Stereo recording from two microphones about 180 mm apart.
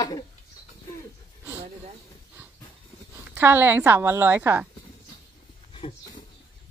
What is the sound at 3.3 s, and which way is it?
A woman's voice, 10° right (ahead or behind).